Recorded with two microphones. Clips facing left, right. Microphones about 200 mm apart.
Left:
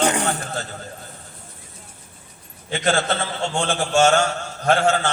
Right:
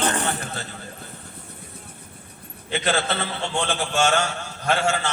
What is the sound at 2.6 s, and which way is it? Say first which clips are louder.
A man's voice: left 3 dB; 50° left (ahead or behind).